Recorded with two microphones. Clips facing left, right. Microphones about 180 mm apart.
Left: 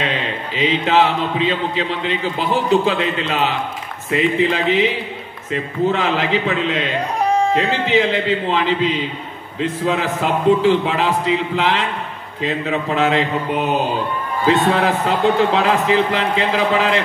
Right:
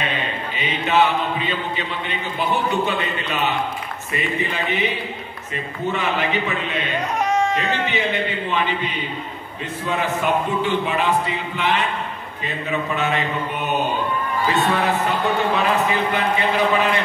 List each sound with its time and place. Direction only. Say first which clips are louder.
0.0 s speech: left 3 dB; 90° left
7.2 s a sound: left 4 dB; 35° left (ahead or behind)
7.9 s speech: left 7 dB; 90° left
14.8 s speech: left 4 dB; 85° left